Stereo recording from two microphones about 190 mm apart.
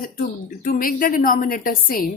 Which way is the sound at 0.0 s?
45° left (ahead or behind).